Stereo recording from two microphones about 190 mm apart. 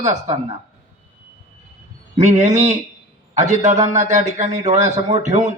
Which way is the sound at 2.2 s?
35° right (ahead or behind).